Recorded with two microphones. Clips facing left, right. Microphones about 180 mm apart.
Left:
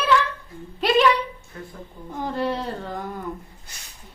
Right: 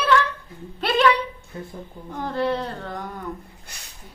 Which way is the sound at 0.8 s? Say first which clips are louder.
Left 1 dB; 10° left (ahead or behind).